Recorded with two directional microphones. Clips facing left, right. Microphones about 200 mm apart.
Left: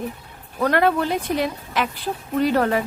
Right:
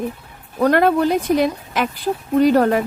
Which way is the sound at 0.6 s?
45° right (ahead or behind).